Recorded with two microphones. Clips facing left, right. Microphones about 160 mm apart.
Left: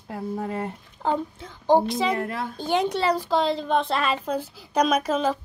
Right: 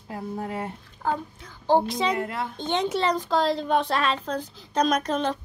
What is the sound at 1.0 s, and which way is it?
Speech, 25° left (ahead or behind).